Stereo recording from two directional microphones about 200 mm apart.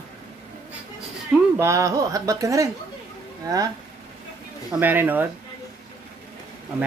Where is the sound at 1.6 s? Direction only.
15° right (ahead or behind).